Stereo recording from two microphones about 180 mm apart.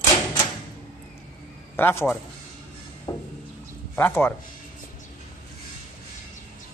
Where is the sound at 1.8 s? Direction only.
10° left (ahead or behind).